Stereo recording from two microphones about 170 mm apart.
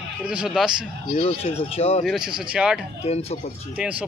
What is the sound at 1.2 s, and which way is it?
Speech, 35° left (ahead or behind).